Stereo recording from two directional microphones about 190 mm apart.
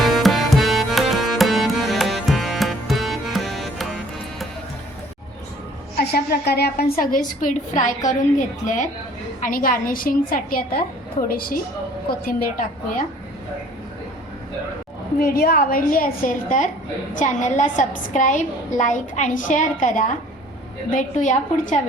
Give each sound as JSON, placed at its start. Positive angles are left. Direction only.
{"t": 0.0, "sound": "music", "side_deg": 0}
{"t": 6.0, "sound": "a woman's voice", "side_deg": 55}
{"t": 15.4, "sound": "a woman's voice", "side_deg": 50}